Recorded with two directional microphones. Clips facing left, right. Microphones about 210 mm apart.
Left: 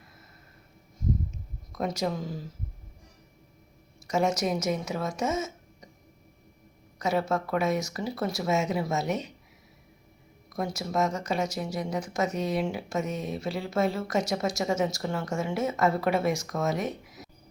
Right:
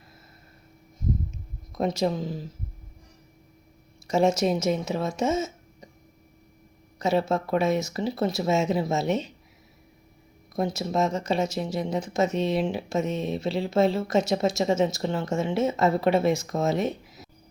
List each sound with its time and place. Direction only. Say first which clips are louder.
1.7 s speech: right 4 dB; 25° right (ahead or behind)
4.0 s speech: right 4 dB; 25° right (ahead or behind)
7.0 s speech: right 3 dB; 25° right (ahead or behind)
10.5 s speech: right 4 dB; 25° right (ahead or behind)